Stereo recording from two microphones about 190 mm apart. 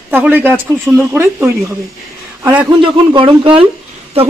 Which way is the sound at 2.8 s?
25° right (ahead or behind).